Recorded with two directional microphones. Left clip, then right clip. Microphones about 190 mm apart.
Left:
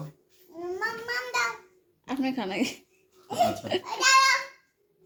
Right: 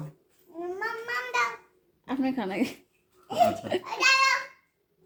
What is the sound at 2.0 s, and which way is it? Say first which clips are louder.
Speech: even; 5° right (ahead or behind).